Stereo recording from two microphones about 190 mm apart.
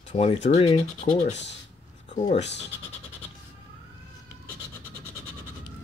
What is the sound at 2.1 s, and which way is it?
Speech, 35° left (ahead or behind).